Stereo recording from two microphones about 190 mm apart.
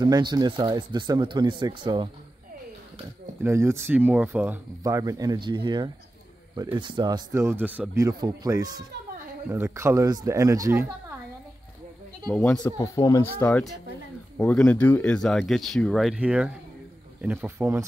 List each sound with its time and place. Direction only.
0.0 s speech: 20° right (ahead or behind)
3.4 s speech: 15° right (ahead or behind)
12.4 s speech: 10° left (ahead or behind)
12.7 s speech: 20° left (ahead or behind); by 17.8 s 15° right (ahead or behind)